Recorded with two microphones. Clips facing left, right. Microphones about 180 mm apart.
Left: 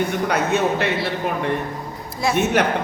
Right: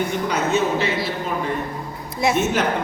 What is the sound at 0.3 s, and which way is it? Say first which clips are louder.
Speech: even; 60° left (ahead or behind).